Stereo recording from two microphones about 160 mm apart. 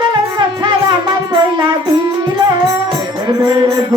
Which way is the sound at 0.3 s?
30° right (ahead or behind).